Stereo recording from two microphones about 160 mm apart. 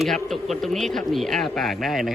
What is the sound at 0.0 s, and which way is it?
A man's voice, centre (ahead or behind).